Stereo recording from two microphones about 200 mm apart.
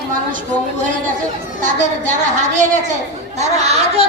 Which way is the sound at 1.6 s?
40° right (ahead or behind).